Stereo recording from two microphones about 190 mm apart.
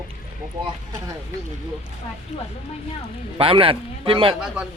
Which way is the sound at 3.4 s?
30° right (ahead or behind).